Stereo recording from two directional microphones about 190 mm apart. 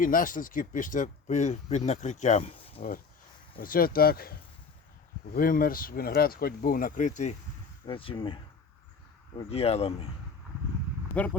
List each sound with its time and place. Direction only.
0.0 s speech: 45° left (ahead or behind)
3.6 s speech: 50° left (ahead or behind)
7.9 s speech: 25° left (ahead or behind)
11.1 s speech: 10° left (ahead or behind)